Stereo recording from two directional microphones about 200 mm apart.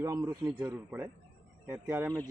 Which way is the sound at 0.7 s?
10° right (ahead or behind).